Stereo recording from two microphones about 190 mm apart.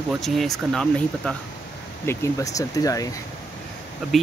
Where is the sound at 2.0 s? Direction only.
15° left (ahead or behind).